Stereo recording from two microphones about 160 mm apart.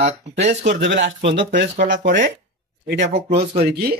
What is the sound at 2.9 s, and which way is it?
Speech, 90° right.